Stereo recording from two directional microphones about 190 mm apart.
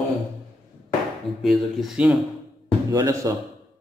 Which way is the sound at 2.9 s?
15° right (ahead or behind).